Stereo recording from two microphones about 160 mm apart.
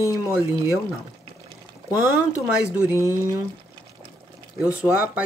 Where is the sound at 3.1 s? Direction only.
20° right (ahead or behind).